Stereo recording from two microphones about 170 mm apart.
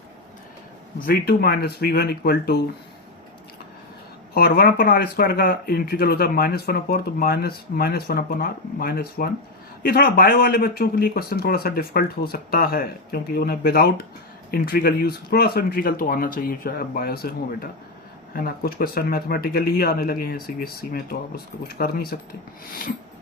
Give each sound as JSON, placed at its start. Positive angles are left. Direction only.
{"t": 0.9, "sound": "speech", "side_deg": 60}
{"t": 4.4, "sound": "speech", "side_deg": 60}